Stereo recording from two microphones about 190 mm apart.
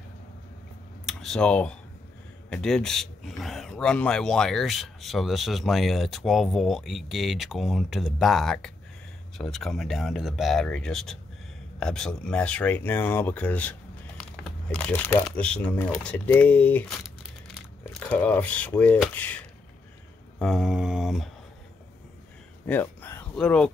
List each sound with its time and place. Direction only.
1.0 s speech: centre (ahead or behind)
20.3 s mantra: centre (ahead or behind)
22.7 s speech: 10° left (ahead or behind)